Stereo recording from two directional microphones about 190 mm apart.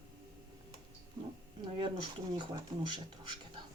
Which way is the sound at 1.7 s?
25° right (ahead or behind).